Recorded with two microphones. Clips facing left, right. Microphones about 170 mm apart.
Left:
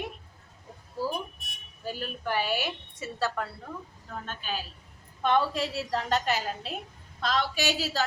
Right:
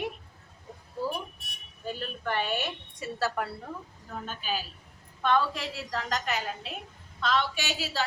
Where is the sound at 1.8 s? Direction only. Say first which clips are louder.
Even; 5° left (ahead or behind).